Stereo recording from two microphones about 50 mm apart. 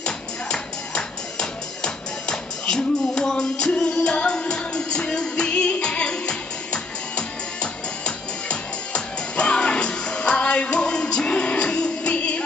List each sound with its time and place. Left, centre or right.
0.0 s music: centre